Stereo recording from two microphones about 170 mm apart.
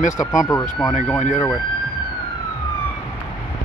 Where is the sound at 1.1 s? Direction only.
50° left (ahead or behind).